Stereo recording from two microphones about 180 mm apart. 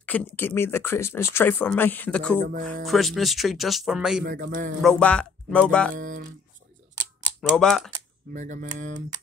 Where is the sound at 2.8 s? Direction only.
Centre (ahead or behind).